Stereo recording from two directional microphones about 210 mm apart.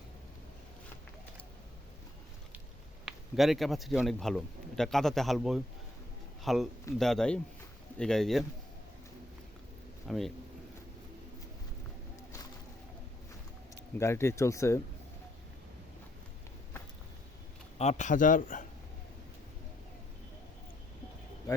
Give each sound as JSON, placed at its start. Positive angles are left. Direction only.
{"t": 3.1, "sound": "a man's voice", "side_deg": 0}
{"t": 10.1, "sound": "a man's voice", "side_deg": 0}
{"t": 14.0, "sound": "speech", "side_deg": 10}
{"t": 17.7, "sound": "a man's voice", "side_deg": 35}